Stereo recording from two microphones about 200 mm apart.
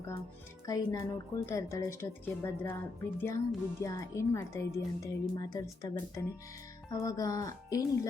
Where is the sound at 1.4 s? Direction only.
15° left (ahead or behind).